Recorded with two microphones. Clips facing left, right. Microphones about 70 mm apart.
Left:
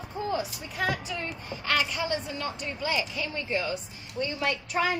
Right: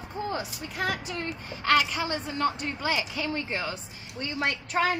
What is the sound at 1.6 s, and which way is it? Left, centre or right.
A woman's voice, right.